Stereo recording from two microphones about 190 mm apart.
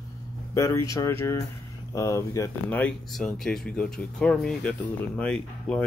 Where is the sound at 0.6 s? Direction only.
15° left (ahead or behind).